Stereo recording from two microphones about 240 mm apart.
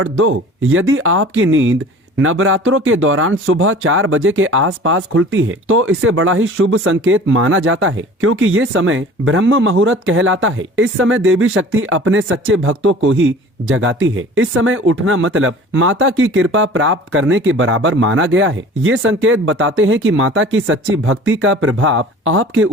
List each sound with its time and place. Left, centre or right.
0.0 s speech: right